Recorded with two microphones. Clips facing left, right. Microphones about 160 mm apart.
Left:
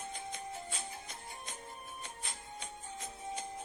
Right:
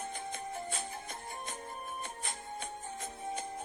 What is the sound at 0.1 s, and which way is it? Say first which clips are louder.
Music: right 3 dB; 55° right (ahead or behind).